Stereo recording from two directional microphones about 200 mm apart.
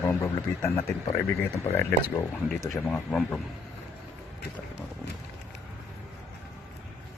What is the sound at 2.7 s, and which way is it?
Speech, 5° left (ahead or behind).